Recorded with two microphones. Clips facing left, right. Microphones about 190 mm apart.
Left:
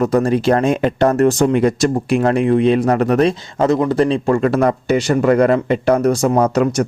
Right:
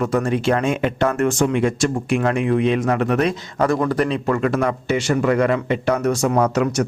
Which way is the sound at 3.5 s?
20° left (ahead or behind).